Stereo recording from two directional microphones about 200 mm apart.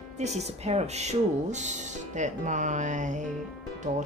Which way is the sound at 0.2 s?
35° right (ahead or behind).